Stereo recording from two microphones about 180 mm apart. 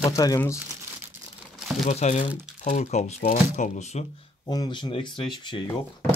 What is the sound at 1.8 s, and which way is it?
Speech, 40° left (ahead or behind).